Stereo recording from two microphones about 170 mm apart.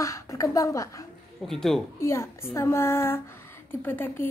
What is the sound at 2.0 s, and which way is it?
A woman's voice, 15° left (ahead or behind).